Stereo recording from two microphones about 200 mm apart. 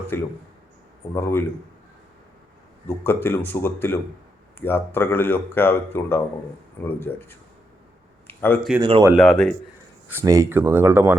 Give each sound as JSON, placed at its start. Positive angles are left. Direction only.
{"t": 0.1, "sound": "speech", "side_deg": 10}
{"t": 2.8, "sound": "speech", "side_deg": 10}
{"t": 8.3, "sound": "a sound", "side_deg": 10}
{"t": 8.8, "sound": "speech", "side_deg": -25}
{"t": 9.1, "sound": "a man's voice", "side_deg": 0}
{"t": 10.1, "sound": "speech", "side_deg": -15}